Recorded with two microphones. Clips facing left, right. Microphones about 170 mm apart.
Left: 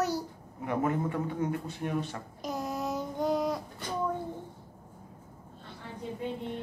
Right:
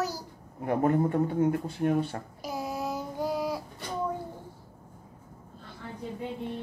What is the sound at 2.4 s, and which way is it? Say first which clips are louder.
Child singing: even; 5° right (ahead or behind).